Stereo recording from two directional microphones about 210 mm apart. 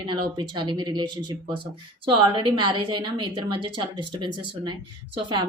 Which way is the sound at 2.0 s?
25° right (ahead or behind).